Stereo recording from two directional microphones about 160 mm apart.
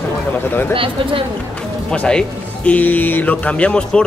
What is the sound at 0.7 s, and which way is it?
Speech, 35° right (ahead or behind).